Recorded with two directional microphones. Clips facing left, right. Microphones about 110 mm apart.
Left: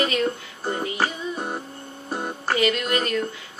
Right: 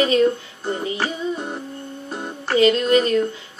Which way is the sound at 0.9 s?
15° left (ahead or behind).